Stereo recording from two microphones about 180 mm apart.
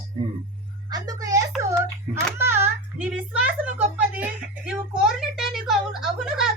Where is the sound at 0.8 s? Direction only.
20° right (ahead or behind).